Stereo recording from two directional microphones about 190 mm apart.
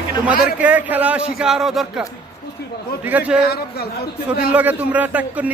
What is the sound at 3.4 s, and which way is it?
Speech, 55° left (ahead or behind).